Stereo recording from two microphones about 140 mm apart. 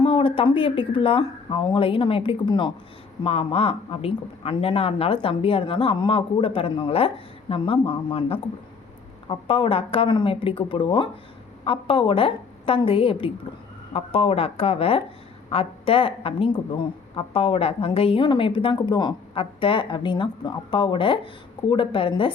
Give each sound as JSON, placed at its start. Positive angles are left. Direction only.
{"t": 0.0, "sound": "a woman's voice", "side_deg": 40}
{"t": 3.2, "sound": "speech", "side_deg": 45}
{"t": 9.5, "sound": "a woman's voice", "side_deg": 40}